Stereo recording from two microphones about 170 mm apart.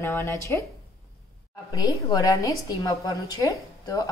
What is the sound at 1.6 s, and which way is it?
A woman's voice, 25° left (ahead or behind).